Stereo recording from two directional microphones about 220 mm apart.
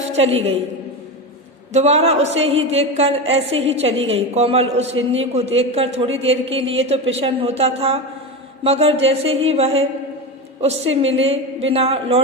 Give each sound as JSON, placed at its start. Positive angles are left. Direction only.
{"t": 0.1, "sound": "a woman's voice", "side_deg": -30}
{"t": 1.7, "sound": "a woman's voice", "side_deg": -30}